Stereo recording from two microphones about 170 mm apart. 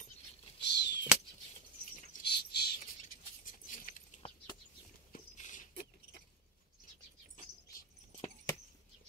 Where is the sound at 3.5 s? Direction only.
50° left (ahead or behind).